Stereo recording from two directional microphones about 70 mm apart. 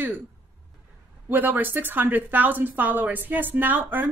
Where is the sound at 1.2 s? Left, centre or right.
Right.